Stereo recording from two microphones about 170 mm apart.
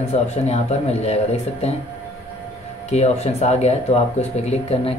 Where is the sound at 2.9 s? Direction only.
40° left (ahead or behind).